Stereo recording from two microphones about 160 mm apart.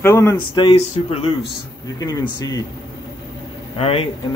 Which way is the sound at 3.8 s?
35° left (ahead or behind).